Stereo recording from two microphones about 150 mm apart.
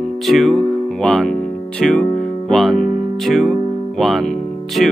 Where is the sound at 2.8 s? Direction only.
55° left (ahead or behind).